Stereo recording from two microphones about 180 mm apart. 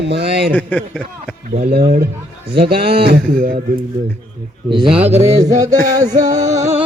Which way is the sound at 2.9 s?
60° right (ahead or behind).